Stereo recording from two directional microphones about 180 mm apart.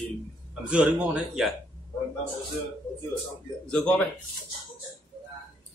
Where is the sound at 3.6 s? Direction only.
5° left (ahead or behind).